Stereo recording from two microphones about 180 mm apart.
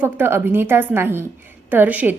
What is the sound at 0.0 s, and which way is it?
A woman's voice, 10° right (ahead or behind).